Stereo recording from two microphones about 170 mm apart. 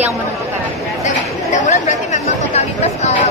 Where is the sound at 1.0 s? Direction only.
45° left (ahead or behind).